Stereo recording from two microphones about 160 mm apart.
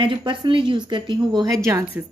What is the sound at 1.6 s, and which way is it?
Speech, 15° right (ahead or behind).